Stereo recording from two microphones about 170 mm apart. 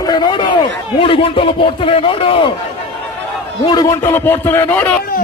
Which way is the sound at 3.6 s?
20° left (ahead or behind).